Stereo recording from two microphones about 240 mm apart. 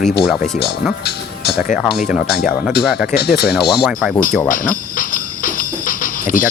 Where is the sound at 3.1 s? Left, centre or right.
Left.